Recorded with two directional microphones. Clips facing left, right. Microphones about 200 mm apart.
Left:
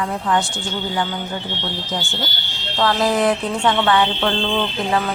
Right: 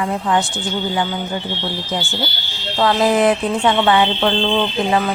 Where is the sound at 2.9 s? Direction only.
20° right (ahead or behind).